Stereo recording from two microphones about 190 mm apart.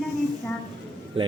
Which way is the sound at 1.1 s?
30° right (ahead or behind).